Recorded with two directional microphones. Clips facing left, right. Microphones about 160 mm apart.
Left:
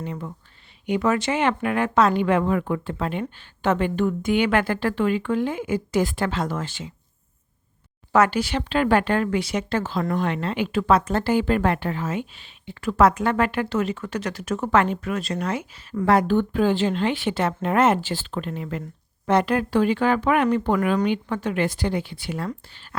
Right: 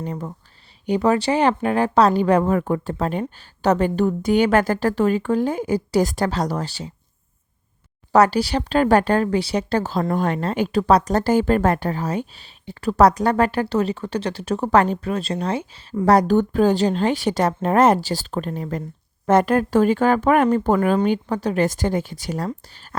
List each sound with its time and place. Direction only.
0.0 s speech: 40° right (ahead or behind)
8.1 s speech: 35° right (ahead or behind)